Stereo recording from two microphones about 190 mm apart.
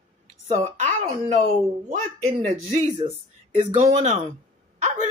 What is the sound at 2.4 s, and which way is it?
Speech, 30° right (ahead or behind).